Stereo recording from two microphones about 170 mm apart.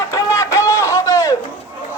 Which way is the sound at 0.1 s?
15° left (ahead or behind).